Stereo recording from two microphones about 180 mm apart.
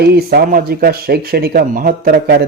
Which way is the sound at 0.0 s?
60° right (ahead or behind).